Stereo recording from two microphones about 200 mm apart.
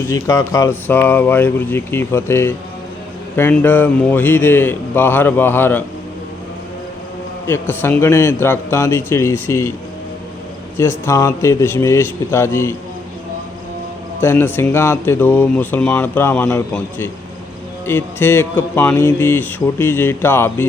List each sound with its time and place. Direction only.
0.1 s speech: 15° left (ahead or behind)
7.4 s speech: 10° left (ahead or behind)
10.8 s speech: 15° left (ahead or behind)
14.2 s speech: 10° left (ahead or behind)
17.8 s speech: 10° left (ahead or behind)